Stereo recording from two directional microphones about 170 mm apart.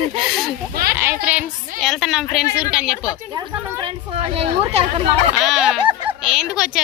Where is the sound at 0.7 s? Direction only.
60° right (ahead or behind).